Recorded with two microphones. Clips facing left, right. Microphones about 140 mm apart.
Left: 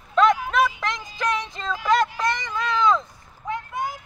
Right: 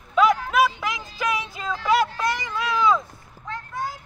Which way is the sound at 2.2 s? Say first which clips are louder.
Even; 5° right (ahead or behind).